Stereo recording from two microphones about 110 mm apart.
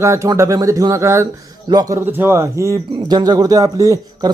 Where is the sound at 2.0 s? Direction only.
20° right (ahead or behind).